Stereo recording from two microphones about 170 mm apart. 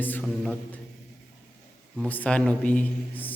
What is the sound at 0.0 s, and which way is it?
Mantra, 10° left (ahead or behind).